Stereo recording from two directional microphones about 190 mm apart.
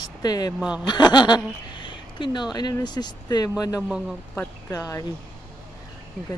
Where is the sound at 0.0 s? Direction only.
20° left (ahead or behind).